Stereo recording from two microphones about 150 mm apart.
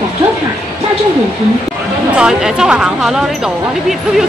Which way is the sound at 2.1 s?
5° right (ahead or behind).